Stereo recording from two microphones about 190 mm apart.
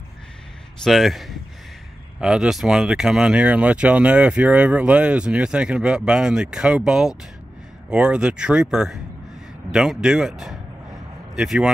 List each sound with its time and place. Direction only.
0.8 s speech: centre (ahead or behind)